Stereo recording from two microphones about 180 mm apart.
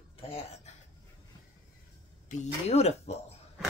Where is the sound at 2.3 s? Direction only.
40° left (ahead or behind).